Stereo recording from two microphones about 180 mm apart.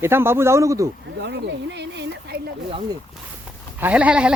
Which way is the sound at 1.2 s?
70° right (ahead or behind).